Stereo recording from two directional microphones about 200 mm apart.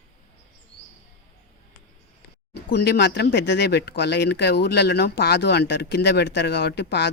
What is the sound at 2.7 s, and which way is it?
Speech, 55° left (ahead or behind).